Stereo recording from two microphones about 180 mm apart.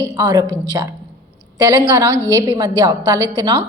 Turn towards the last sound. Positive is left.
turn(degrees=-20)  # may be behind; listen again after turning